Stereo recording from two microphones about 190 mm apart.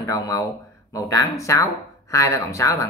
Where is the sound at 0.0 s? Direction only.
20° left (ahead or behind).